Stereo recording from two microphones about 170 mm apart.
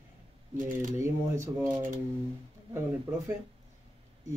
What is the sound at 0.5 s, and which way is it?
Speech, 50° right (ahead or behind).